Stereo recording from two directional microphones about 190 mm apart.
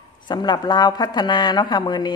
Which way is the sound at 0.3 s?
20° left (ahead or behind).